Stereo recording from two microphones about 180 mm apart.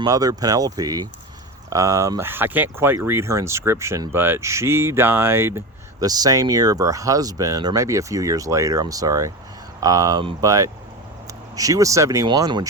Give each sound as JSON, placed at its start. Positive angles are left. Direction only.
{"t": 0.0, "sound": "speech", "side_deg": -20}